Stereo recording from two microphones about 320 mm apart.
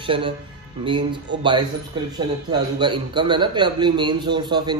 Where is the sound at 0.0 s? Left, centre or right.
Centre.